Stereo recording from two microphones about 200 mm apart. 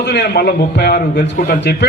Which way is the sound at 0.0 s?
55° left (ahead or behind).